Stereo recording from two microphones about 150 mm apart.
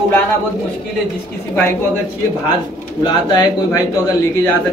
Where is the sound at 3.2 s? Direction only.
25° left (ahead or behind).